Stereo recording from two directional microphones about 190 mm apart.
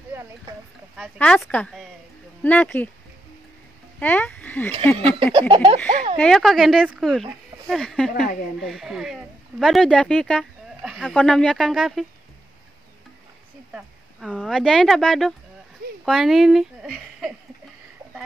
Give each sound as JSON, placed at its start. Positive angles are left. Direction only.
{"t": 0.9, "sound": "speech", "side_deg": 0}
{"t": 4.0, "sound": "speech", "side_deg": 10}
{"t": 4.9, "sound": "a sound", "side_deg": -30}
{"t": 6.1, "sound": "speech", "side_deg": 5}
{"t": 13.7, "sound": "speech", "side_deg": 0}